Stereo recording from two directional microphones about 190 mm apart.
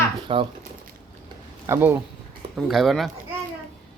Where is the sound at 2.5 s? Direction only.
Centre (ahead or behind).